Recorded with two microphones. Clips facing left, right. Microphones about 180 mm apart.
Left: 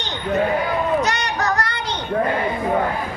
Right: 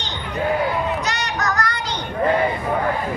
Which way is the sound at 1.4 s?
30° left (ahead or behind).